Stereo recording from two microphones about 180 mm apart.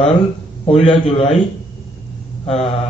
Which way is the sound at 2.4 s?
35° left (ahead or behind).